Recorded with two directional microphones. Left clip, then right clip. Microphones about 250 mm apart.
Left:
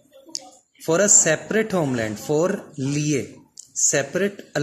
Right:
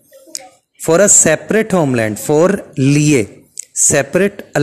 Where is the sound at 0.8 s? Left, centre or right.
Right.